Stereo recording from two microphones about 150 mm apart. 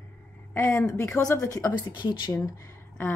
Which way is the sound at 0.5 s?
15° left (ahead or behind).